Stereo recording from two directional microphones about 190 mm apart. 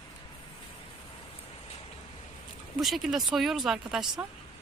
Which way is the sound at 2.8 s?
Centre (ahead or behind).